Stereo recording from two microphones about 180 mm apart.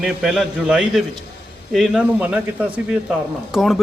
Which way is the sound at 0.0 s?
5° right (ahead or behind).